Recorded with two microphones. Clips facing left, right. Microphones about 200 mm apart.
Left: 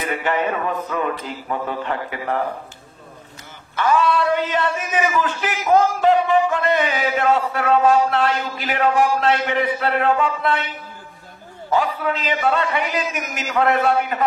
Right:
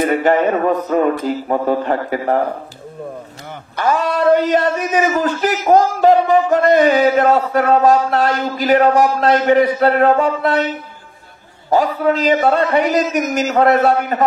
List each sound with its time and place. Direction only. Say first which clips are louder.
0.0 s a man's voice: right 8 dB; 40° right (ahead or behind)
3.7 s a man's voice: right 1 dB; 40° right (ahead or behind)
11.7 s a man's voice: right 6 dB; 40° right (ahead or behind)